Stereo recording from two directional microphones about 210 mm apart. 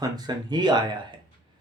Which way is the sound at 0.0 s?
20° right (ahead or behind).